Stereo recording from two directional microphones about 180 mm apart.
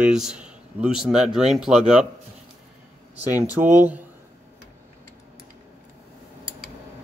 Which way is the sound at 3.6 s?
10° right (ahead or behind).